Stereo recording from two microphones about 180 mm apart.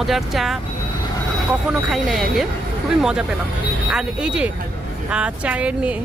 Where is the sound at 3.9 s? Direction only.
5° right (ahead or behind).